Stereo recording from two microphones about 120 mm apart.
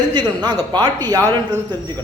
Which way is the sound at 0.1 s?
35° right (ahead or behind).